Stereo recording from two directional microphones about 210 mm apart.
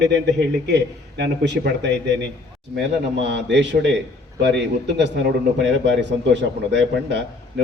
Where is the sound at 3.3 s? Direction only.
55° right (ahead or behind).